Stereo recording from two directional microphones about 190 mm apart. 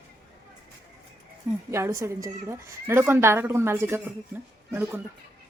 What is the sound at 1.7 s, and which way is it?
A woman's voice, 15° right (ahead or behind).